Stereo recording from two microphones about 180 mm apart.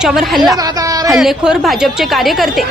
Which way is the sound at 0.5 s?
20° right (ahead or behind).